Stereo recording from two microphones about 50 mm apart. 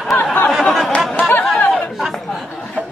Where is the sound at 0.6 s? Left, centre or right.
Centre.